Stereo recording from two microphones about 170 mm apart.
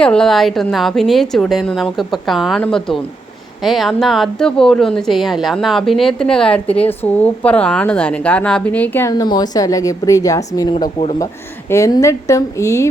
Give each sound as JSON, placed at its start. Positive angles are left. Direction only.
{"t": 0.0, "sound": "a woman's voice", "side_deg": 5}